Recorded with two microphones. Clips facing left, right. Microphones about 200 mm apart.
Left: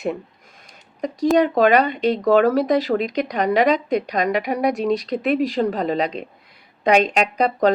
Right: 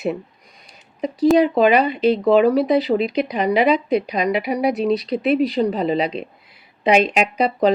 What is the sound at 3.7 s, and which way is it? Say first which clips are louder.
Speech: right 2 dB; 40° left (ahead or behind).